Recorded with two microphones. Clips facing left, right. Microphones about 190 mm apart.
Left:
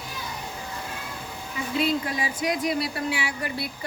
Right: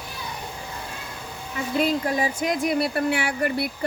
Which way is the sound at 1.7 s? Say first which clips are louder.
Right 3 dB; 45° right (ahead or behind).